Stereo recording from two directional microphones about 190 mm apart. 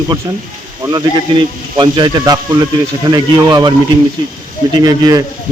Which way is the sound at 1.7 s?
25° right (ahead or behind).